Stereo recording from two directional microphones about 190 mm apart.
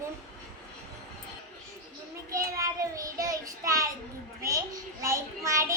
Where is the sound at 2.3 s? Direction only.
15° right (ahead or behind).